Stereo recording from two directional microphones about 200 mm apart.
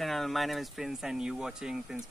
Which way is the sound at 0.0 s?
Centre (ahead or behind).